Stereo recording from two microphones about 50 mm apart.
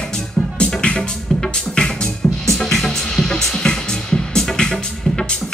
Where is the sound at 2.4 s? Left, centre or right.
Centre.